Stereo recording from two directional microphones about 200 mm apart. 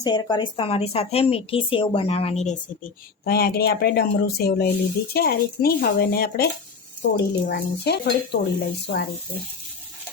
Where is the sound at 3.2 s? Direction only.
50° left (ahead or behind).